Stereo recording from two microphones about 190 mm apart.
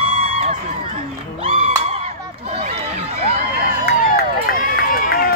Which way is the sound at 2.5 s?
35° right (ahead or behind).